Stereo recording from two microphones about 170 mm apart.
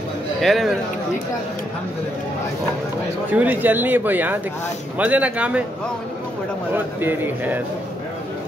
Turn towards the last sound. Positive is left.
turn(degrees=-10)  # may be behind; listen again after turning